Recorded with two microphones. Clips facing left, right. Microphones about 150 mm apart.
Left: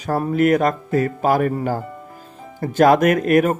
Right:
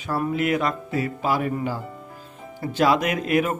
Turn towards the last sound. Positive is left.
turn(degrees=50)  # may be behind; listen again after turning